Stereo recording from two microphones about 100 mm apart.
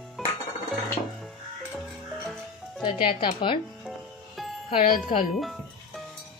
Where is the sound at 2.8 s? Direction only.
55° left (ahead or behind).